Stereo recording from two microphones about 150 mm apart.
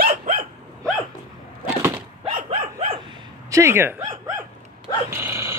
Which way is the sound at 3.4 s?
20° right (ahead or behind).